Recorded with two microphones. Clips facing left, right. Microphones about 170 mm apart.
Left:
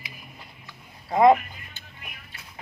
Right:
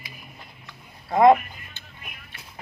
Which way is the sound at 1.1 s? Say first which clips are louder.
Right 1 dB; 35° right (ahead or behind).